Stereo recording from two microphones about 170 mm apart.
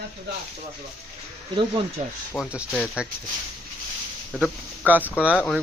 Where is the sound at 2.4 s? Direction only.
5° right (ahead or behind).